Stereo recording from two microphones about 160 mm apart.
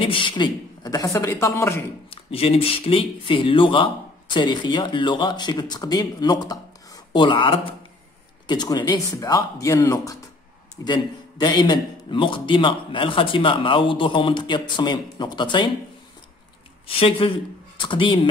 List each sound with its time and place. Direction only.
0.0 s a man's voice: 30° left (ahead or behind); by 1.9 s 15° left (ahead or behind)
2.0 s a man's voice: 35° left (ahead or behind)
16.8 s speech: 35° left (ahead or behind)